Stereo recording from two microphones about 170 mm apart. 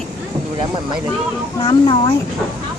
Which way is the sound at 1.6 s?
25° left (ahead or behind).